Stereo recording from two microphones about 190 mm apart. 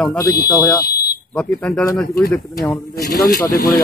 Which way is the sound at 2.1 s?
15° left (ahead or behind).